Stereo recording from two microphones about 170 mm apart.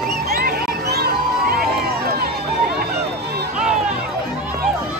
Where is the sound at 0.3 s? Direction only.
60° right (ahead or behind).